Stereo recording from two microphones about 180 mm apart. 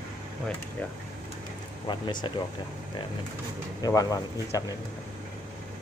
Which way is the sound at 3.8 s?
20° left (ahead or behind).